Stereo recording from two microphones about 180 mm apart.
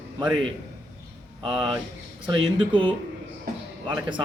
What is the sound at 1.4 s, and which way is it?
Speech, 30° right (ahead or behind).